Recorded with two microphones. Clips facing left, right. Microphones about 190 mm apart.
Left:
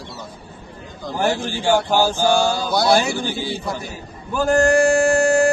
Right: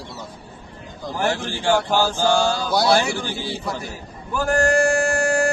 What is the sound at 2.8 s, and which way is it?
Speech, 20° left (ahead or behind).